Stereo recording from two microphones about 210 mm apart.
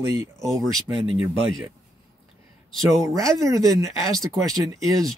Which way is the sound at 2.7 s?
Centre (ahead or behind).